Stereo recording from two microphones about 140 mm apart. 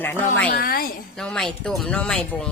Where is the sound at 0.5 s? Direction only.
90° left.